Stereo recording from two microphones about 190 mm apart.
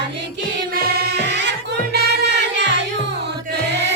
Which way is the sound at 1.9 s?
65° right (ahead or behind).